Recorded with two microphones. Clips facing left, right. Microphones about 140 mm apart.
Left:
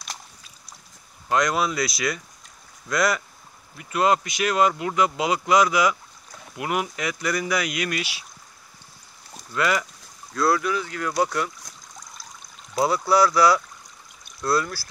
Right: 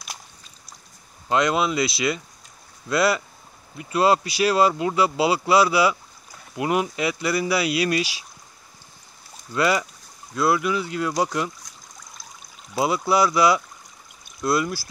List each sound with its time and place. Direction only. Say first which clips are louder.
1.3 s speech: right 2 dB; 25° right (ahead or behind)
9.5 s speech: right 2 dB; 20° right (ahead or behind)
13.1 s speech: left 1 dB; 20° right (ahead or behind)